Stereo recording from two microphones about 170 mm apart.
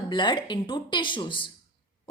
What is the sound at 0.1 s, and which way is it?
Speech, 30° left (ahead or behind).